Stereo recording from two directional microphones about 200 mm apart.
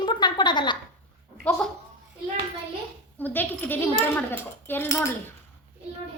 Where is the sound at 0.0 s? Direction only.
20° left (ahead or behind).